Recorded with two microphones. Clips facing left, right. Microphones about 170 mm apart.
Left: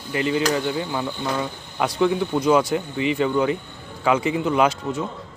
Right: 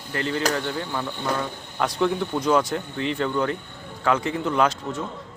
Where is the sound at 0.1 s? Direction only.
10° left (ahead or behind).